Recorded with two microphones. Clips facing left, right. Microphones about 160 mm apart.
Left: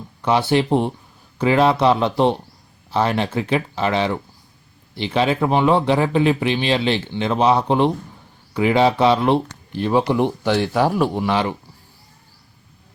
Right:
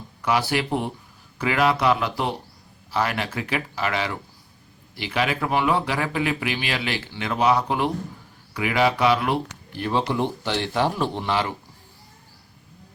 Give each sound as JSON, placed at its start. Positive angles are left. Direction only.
{"t": 0.2, "sound": "speech", "side_deg": 25}